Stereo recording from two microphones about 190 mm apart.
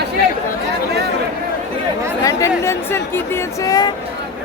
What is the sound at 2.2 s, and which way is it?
A woman's voice, 15° left (ahead or behind).